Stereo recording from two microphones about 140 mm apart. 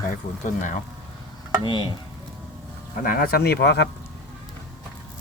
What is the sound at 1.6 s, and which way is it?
Speech, 35° left (ahead or behind).